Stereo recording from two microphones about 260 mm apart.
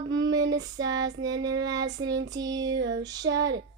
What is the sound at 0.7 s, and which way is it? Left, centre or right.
Child singing, centre.